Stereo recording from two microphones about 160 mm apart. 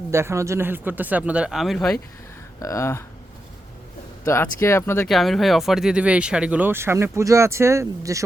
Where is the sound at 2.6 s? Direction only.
20° left (ahead or behind).